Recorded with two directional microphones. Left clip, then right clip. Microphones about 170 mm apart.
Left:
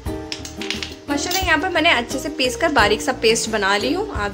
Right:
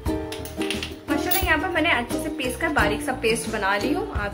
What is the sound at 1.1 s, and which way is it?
A woman's voice, 50° left (ahead or behind).